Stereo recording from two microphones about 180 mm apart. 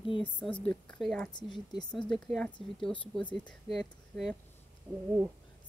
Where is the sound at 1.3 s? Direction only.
25° left (ahead or behind).